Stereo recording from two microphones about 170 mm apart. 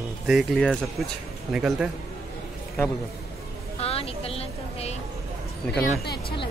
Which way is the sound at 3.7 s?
35° left (ahead or behind).